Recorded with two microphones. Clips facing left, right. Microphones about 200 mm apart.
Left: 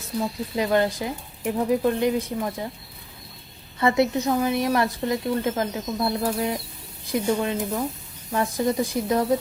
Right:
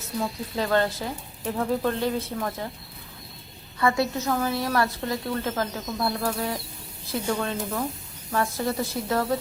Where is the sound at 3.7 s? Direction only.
20° left (ahead or behind).